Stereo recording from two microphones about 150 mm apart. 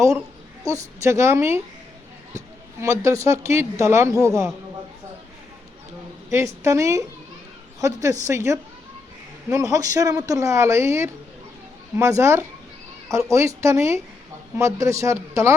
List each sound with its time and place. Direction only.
0.6 s a woman's voice: 20° right (ahead or behind)
2.8 s a woman's voice: 20° right (ahead or behind)
6.6 s a woman's voice: 20° right (ahead or behind)